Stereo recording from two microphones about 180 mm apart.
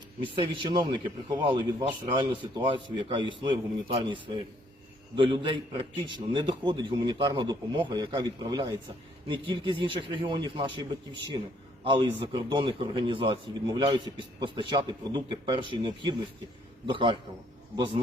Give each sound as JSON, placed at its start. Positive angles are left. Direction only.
{"t": 0.3, "sound": "speech", "side_deg": -25}
{"t": 12.2, "sound": "speech", "side_deg": -25}